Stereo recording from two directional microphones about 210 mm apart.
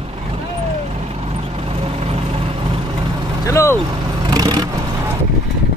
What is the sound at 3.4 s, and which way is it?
Speech, 15° left (ahead or behind).